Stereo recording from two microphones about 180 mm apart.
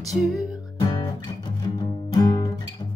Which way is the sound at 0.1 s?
Centre (ahead or behind).